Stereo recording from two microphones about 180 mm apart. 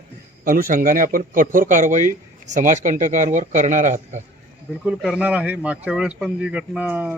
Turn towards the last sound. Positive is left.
turn(degrees=-10)  # may be behind; listen again after turning